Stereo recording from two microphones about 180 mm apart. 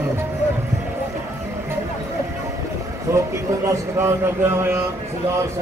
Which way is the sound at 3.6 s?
15° right (ahead or behind).